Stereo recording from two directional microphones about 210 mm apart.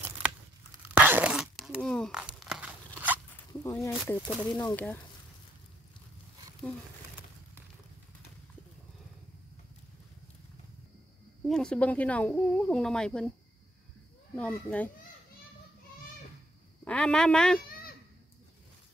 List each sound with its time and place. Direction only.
0.2 s a sound: 10° right (ahead or behind)
3.6 s speech: 15° left (ahead or behind)
3.9 s speech: centre (ahead or behind)
11.4 s speech: 5° left (ahead or behind)
14.3 s speech: 5° left (ahead or behind)
16.8 s speech: 5° left (ahead or behind)
17.6 s a sound: 45° left (ahead or behind)